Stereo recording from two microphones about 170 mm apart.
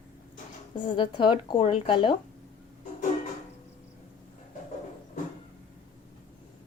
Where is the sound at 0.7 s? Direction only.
30° left (ahead or behind).